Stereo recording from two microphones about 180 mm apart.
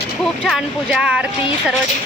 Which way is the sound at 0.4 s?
5° right (ahead or behind).